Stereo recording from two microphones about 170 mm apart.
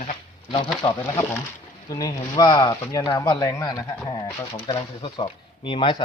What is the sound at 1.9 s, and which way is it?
Speech, 20° left (ahead or behind).